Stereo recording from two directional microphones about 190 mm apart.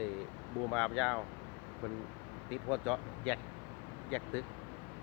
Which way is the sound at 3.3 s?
10° left (ahead or behind).